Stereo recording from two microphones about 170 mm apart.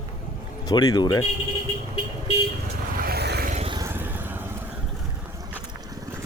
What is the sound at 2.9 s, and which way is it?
Vehicle, 65° right (ahead or behind).